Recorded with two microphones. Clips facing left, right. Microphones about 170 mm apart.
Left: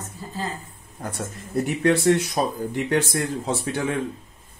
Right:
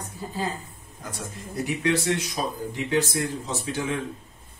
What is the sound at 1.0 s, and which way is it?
Speech, 55° left (ahead or behind).